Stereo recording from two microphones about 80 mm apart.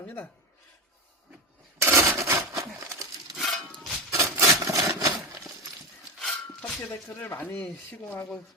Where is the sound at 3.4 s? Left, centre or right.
Centre.